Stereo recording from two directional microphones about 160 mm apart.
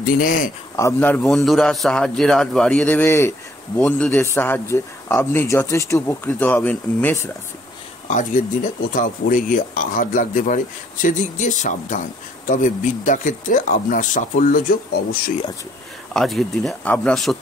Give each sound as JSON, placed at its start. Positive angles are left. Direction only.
{"t": 0.0, "sound": "speech", "side_deg": 60}
{"t": 0.7, "sound": "a man's voice", "side_deg": 15}
{"t": 1.2, "sound": "a man's voice", "side_deg": 0}
{"t": 8.1, "sound": "speech", "side_deg": 50}
{"t": 16.1, "sound": "speech", "side_deg": 0}